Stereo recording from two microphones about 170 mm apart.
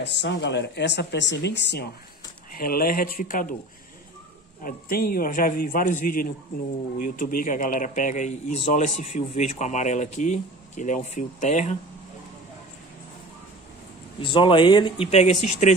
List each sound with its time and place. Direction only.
0.0 s speech: 90° left
2.5 s a man's voice: 60° left (ahead or behind)
4.6 s a man's voice: 60° left (ahead or behind); by 11.8 s 45° left (ahead or behind)
14.2 s speech: 30° left (ahead or behind)